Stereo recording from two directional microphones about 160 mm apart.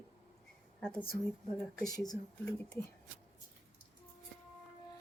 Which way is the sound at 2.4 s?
5° left (ahead or behind).